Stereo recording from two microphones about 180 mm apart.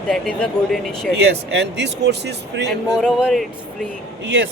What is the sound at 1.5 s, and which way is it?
Speech, 80° right.